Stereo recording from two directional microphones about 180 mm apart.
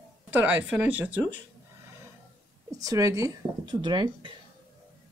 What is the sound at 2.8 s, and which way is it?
Speech, 20° right (ahead or behind).